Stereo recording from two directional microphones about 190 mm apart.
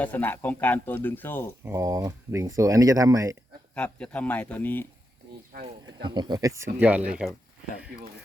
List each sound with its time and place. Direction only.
0.0 s speech: 10° left (ahead or behind)
1.6 s speech: 15° right (ahead or behind)
3.8 s speech: 5° left (ahead or behind)
5.8 s speech: 25° right (ahead or behind); by 7.3 s 5° right (ahead or behind)